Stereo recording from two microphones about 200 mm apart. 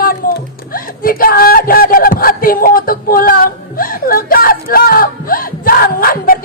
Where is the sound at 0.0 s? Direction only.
45° left (ahead or behind).